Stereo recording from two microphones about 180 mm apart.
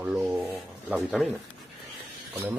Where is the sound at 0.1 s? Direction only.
Centre (ahead or behind).